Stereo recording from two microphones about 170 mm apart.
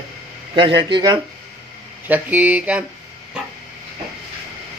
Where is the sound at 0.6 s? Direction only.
30° right (ahead or behind).